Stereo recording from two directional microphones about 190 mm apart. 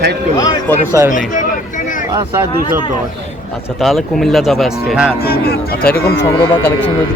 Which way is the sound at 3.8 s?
Centre (ahead or behind).